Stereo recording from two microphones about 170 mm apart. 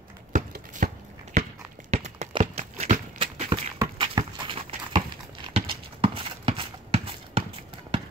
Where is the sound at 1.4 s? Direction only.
45° right (ahead or behind).